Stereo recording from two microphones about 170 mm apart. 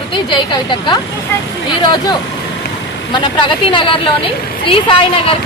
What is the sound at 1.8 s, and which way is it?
A woman's voice, 25° left (ahead or behind).